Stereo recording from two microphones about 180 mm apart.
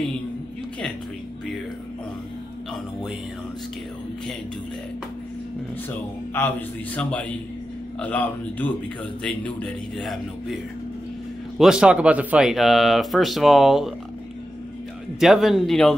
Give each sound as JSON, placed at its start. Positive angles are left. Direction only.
{"t": 5.9, "sound": "a man's voice", "side_deg": 10}
{"t": 15.1, "sound": "speech", "side_deg": 0}